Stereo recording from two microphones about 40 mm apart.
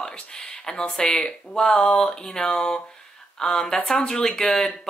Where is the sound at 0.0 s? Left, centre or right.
Centre.